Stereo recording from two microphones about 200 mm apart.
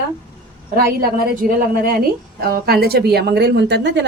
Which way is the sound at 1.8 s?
45° right (ahead or behind).